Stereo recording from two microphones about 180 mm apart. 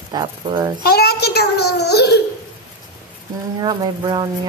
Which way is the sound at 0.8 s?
60° left (ahead or behind).